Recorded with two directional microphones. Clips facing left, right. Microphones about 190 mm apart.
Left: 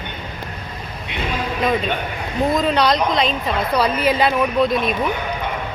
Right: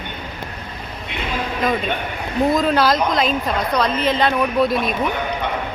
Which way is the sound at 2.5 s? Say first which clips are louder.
Even; centre (ahead or behind).